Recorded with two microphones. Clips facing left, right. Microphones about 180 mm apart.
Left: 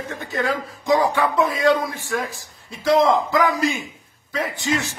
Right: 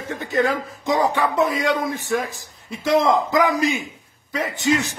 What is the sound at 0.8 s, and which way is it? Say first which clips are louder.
A man's voice: left 1 dB; 20° right (ahead or behind).